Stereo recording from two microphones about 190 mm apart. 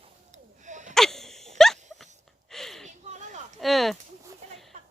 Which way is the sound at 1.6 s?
Centre (ahead or behind).